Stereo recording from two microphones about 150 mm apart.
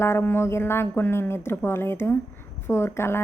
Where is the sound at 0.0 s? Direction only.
15° left (ahead or behind).